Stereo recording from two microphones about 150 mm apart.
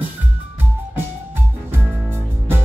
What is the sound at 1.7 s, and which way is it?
Music, 15° right (ahead or behind).